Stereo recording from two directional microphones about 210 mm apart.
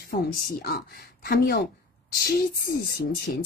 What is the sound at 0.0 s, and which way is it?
Speech, 45° left (ahead or behind).